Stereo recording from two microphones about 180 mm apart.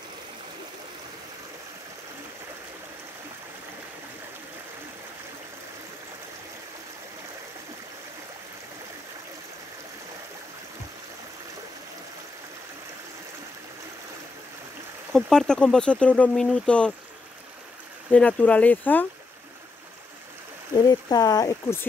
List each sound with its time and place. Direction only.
15.1 s speech: centre (ahead or behind)
18.1 s speech: 5° left (ahead or behind)
20.8 s speech: 20° left (ahead or behind)